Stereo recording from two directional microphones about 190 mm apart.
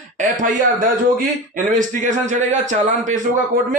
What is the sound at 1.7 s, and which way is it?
A man's voice, 40° right (ahead or behind).